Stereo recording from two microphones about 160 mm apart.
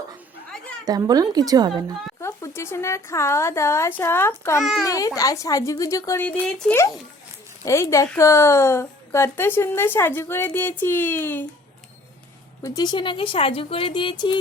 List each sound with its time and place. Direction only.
0.9 s speech: 25° right (ahead or behind)
2.2 s a woman's voice: 15° left (ahead or behind)
12.6 s speech: 25° left (ahead or behind)